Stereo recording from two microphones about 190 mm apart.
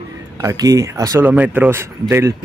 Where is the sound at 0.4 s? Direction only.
20° right (ahead or behind).